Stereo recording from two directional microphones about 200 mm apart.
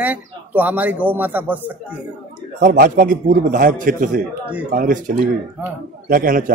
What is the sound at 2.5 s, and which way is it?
A man's voice, 45° right (ahead or behind).